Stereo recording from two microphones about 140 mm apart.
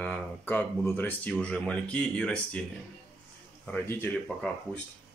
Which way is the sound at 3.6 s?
5° left (ahead or behind).